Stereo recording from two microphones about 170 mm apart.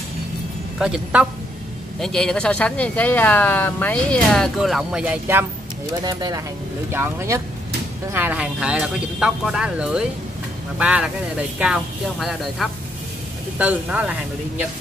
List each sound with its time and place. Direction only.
0.7 s speech: 5° right (ahead or behind)
6.0 s speech: 25° right (ahead or behind); by 14.1 s 5° right (ahead or behind)